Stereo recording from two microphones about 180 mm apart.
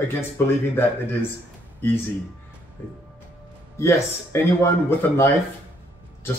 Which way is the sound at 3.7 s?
15° left (ahead or behind).